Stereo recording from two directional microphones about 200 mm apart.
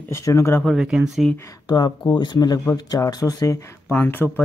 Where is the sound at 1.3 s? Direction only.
20° left (ahead or behind).